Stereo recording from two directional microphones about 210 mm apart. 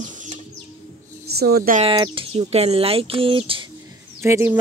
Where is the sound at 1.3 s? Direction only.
50° right (ahead or behind).